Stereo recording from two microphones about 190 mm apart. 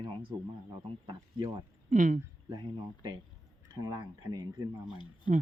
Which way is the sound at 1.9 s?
40° right (ahead or behind).